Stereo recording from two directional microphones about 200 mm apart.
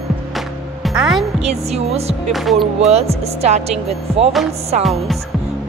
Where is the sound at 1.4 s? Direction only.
30° right (ahead or behind).